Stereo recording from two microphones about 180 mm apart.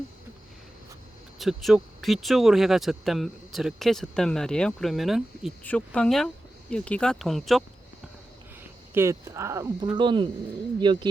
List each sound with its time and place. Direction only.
1.4 s speech: centre (ahead or behind)
8.9 s speech: 15° right (ahead or behind)